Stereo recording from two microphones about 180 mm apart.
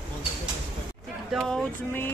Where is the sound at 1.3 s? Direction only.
Centre (ahead or behind).